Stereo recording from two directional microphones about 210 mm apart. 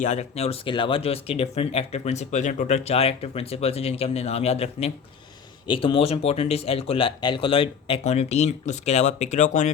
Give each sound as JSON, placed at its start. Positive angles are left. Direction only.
{"t": 0.0, "sound": "speech", "side_deg": 35}